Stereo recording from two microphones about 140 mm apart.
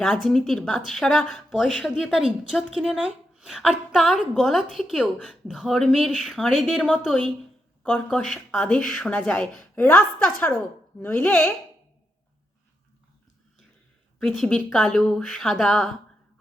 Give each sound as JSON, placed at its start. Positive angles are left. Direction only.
{"t": 0.0, "sound": "a woman's voice", "side_deg": 5}
{"t": 14.2, "sound": "a woman's voice", "side_deg": 5}